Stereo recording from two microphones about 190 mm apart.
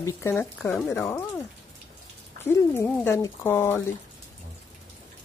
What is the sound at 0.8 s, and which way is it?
Speech, 15° left (ahead or behind).